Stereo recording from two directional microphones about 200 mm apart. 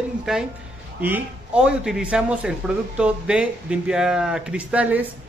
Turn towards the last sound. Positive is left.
turn(degrees=-5)  # may be behind; listen again after turning